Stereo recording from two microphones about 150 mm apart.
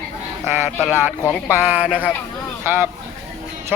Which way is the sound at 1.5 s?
10° right (ahead or behind).